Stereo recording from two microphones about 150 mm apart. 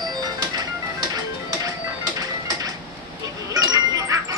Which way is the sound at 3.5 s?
25° right (ahead or behind).